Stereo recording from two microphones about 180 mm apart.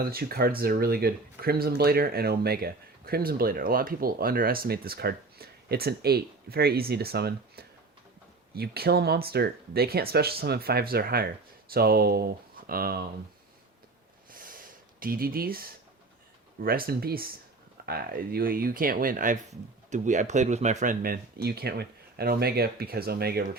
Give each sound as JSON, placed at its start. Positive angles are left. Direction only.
{"t": 0.0, "sound": "speech", "side_deg": -55}
{"t": 14.3, "sound": "a sound", "side_deg": -50}
{"t": 15.0, "sound": "speech", "side_deg": -55}